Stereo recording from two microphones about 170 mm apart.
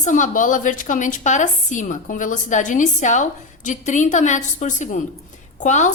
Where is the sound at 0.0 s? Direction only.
50° left (ahead or behind).